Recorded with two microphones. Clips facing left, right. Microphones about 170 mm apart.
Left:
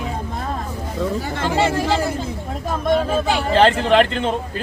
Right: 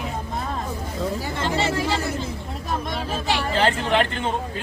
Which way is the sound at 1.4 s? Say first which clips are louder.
Left 5 dB; 50° left (ahead or behind).